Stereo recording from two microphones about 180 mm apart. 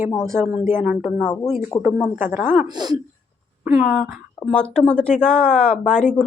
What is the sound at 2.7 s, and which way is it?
Speech, 20° right (ahead or behind).